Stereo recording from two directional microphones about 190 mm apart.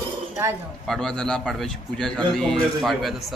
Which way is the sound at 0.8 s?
Centre (ahead or behind).